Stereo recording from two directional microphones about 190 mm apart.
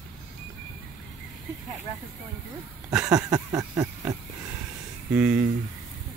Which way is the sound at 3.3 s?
15° right (ahead or behind).